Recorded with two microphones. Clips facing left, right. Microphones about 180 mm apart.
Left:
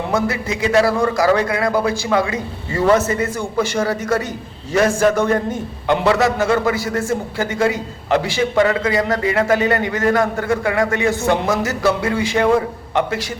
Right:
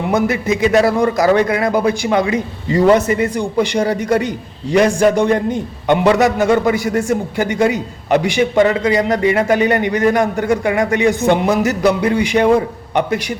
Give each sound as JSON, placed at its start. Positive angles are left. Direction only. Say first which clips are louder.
{"t": 0.1, "sound": "a man's voice", "louder": "right 6 dB", "side_deg": -20}